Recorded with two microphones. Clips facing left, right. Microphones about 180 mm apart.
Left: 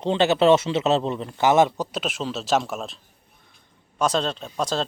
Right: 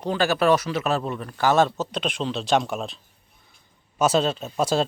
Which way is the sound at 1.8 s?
5° left (ahead or behind).